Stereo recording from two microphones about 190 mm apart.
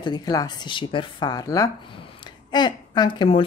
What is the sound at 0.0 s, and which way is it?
Speech, 20° left (ahead or behind).